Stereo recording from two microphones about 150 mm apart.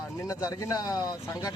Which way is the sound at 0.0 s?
20° left (ahead or behind).